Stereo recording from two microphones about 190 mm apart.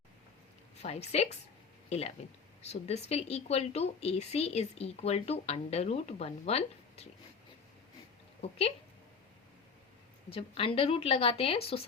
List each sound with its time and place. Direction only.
0.8 s speech: 35° left (ahead or behind)
8.4 s speech: 30° left (ahead or behind)
10.2 s a woman's voice: 30° left (ahead or behind)